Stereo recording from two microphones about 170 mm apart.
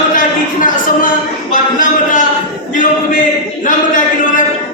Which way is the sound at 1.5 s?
50° left (ahead or behind).